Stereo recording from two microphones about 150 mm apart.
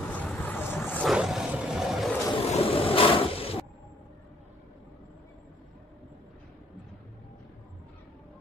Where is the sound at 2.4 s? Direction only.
40° left (ahead or behind).